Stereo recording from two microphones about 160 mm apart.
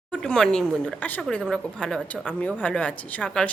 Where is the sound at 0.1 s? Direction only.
5° left (ahead or behind).